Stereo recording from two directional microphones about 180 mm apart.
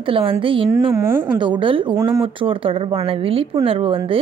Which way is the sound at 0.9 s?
10° right (ahead or behind).